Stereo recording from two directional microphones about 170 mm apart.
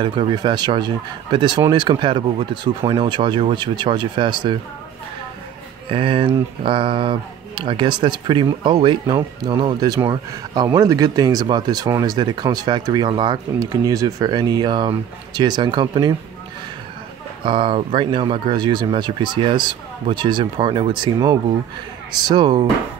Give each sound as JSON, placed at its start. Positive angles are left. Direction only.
{"t": 0.0, "sound": "speech", "side_deg": -30}
{"t": 5.9, "sound": "speech", "side_deg": -30}
{"t": 17.4, "sound": "speech", "side_deg": -30}